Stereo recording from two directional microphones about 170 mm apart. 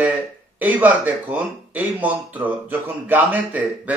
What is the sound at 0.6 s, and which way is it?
Speech, 10° right (ahead or behind).